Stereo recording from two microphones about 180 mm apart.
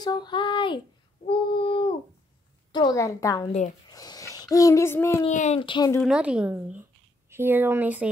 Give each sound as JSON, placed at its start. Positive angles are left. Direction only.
{"t": 0.0, "sound": "speech", "side_deg": 25}
{"t": 1.2, "sound": "child singing", "side_deg": 30}
{"t": 2.7, "sound": "a woman's voice", "side_deg": 20}
{"t": 3.9, "sound": "a sound", "side_deg": 20}
{"t": 5.3, "sound": "speech", "side_deg": 40}
{"t": 5.6, "sound": "a woman's voice", "side_deg": 25}
{"t": 5.9, "sound": "speech", "side_deg": -5}